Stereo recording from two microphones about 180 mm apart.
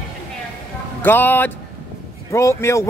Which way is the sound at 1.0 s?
10° left (ahead or behind).